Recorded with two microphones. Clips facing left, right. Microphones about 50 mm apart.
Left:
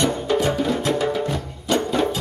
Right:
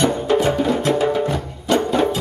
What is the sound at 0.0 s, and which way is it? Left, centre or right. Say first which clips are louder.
Music: right 3 dB; centre.